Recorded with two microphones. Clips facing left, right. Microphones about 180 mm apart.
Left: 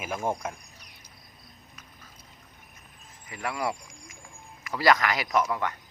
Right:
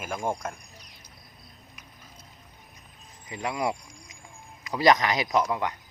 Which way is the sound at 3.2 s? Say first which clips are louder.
Right 2 dB; 20° right (ahead or behind).